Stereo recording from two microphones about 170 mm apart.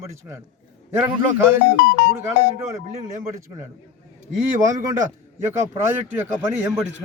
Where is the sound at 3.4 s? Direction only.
15° right (ahead or behind).